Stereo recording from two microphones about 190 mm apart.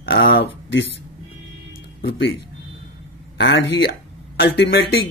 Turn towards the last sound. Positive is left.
turn(degrees=60)  # may be behind; listen again after turning